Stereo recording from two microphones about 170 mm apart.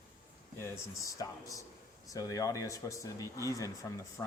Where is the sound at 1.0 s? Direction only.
20° left (ahead or behind).